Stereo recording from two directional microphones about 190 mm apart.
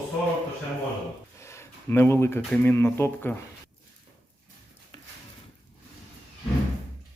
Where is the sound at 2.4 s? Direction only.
5° left (ahead or behind).